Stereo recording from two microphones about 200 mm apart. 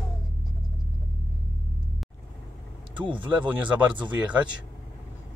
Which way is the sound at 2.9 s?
25° right (ahead or behind).